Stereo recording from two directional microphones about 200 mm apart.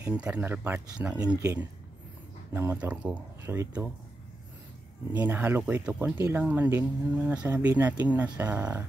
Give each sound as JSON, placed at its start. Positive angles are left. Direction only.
{"t": 0.0, "sound": "speech", "side_deg": -5}
{"t": 1.2, "sound": "speech", "side_deg": -15}
{"t": 5.1, "sound": "speech", "side_deg": -10}